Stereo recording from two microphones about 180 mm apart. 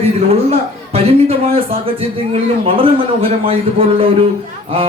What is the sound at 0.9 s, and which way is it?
A man's voice, 30° right (ahead or behind).